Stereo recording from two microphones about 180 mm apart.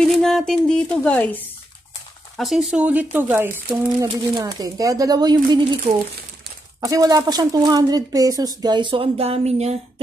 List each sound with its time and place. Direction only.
0.0 s speech: centre (ahead or behind); by 9.8 s 35° right (ahead or behind)